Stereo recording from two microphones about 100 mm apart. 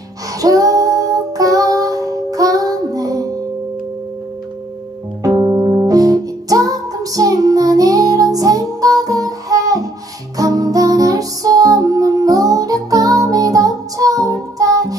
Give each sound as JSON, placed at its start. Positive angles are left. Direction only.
{"t": 0.4, "sound": "music", "side_deg": -35}
{"t": 5.2, "sound": "music", "side_deg": -40}